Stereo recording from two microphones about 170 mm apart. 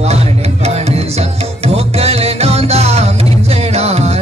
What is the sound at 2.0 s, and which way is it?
Music, 35° right (ahead or behind).